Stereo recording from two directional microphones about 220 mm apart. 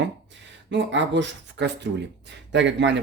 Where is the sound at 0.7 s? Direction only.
55° right (ahead or behind).